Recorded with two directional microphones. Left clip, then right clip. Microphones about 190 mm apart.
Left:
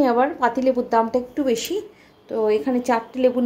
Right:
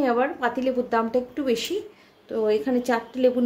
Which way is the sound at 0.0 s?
15° left (ahead or behind).